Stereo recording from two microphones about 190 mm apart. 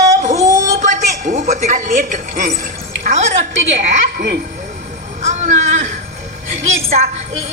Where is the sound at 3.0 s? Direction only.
40° right (ahead or behind).